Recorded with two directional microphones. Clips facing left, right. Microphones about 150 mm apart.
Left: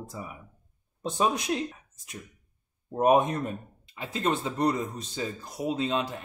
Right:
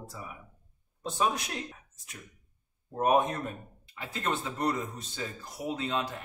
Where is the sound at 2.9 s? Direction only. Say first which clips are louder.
Left 4 dB; 20° left (ahead or behind).